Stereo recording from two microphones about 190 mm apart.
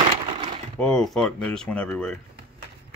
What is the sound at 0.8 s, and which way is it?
Speech, 5° left (ahead or behind).